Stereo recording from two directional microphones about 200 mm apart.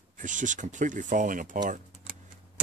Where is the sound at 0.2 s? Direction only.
40° right (ahead or behind).